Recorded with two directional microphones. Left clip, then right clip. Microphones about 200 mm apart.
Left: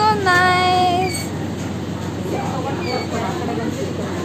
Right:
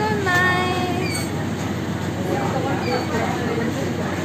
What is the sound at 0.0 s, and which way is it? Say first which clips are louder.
Child singing: left 5 dB; 55° left (ahead or behind).